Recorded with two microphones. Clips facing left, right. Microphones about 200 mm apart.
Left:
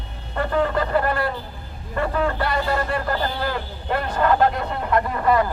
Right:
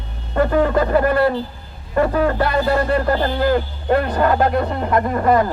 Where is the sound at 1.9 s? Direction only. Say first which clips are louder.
Right 6 dB; 40° right (ahead or behind).